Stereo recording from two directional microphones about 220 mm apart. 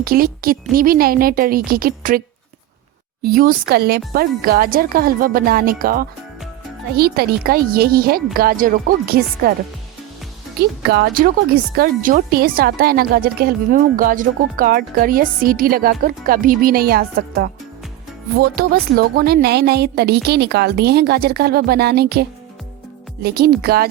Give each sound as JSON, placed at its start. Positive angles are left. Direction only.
{"t": 0.0, "sound": "speech", "side_deg": -40}
{"t": 3.2, "sound": "a woman's voice", "side_deg": -40}
{"t": 10.6, "sound": "a woman's voice", "side_deg": -45}